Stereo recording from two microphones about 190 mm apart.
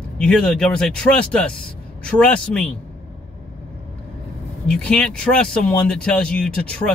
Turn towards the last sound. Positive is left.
turn(degrees=5)  # may be behind; listen again after turning